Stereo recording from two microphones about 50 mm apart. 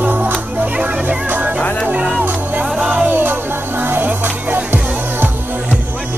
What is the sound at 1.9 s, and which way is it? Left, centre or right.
Music, right.